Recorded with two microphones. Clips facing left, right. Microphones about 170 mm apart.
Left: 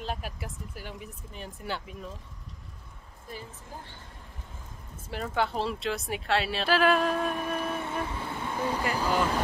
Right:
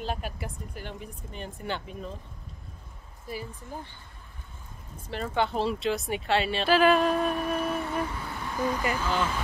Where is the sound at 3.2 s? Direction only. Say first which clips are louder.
Right 5 dB; 10° right (ahead or behind).